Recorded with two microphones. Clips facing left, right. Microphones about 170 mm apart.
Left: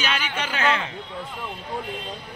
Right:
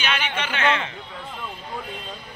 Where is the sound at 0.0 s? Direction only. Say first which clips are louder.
Right 1 dB; 35° left (ahead or behind).